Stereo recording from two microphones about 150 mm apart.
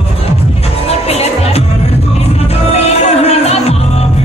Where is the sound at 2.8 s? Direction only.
45° left (ahead or behind).